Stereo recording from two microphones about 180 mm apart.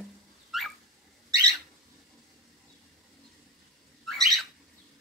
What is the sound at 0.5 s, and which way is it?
Dog, centre (ahead or behind).